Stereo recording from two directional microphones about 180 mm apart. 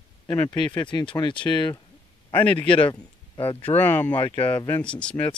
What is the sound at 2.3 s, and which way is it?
Speech, 10° left (ahead or behind).